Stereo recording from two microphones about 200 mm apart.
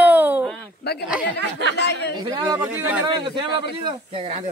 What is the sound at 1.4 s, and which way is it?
Speech, 60° right (ahead or behind).